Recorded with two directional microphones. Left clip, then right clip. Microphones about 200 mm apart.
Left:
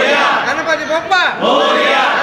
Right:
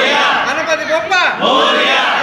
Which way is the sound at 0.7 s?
35° left (ahead or behind).